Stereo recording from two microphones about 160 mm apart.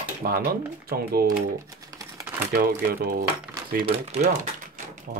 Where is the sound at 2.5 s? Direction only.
75° right (ahead or behind).